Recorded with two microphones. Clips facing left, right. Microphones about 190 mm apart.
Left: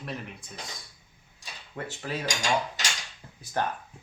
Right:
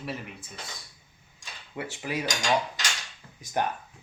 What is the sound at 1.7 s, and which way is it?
Speech, 10° right (ahead or behind).